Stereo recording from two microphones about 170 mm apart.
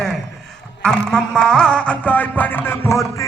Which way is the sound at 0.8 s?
5° left (ahead or behind).